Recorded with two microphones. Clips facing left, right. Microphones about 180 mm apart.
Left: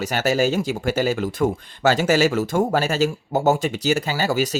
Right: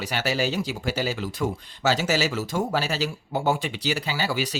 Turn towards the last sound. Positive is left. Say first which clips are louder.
# left 5 dB
turn(degrees=45)  # may be behind; listen again after turning